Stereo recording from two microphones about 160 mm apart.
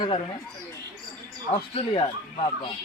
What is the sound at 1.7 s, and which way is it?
Speech, 30° left (ahead or behind).